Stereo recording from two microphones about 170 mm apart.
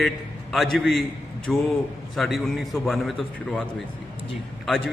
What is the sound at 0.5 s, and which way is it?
A man's voice, centre (ahead or behind).